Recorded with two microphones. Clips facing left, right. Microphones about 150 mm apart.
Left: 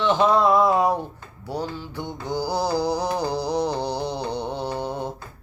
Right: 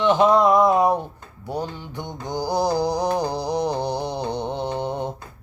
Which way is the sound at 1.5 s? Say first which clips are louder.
Right 1 dB; 15° right (ahead or behind).